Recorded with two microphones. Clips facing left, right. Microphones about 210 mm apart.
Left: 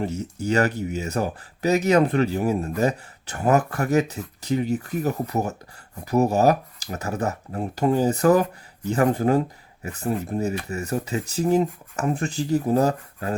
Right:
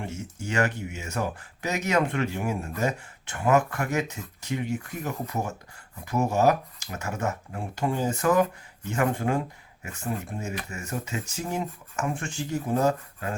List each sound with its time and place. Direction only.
0.0 s speech: 35° left (ahead or behind)